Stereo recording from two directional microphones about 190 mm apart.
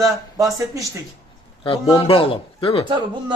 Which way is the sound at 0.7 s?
15° right (ahead or behind).